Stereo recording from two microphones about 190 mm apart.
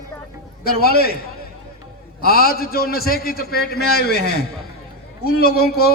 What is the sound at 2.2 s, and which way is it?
Speech, 50° left (ahead or behind).